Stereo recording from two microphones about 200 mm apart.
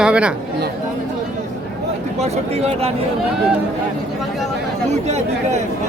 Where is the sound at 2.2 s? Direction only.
35° right (ahead or behind).